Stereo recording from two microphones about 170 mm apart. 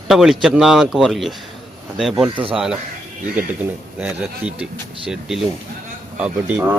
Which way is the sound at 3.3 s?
10° right (ahead or behind).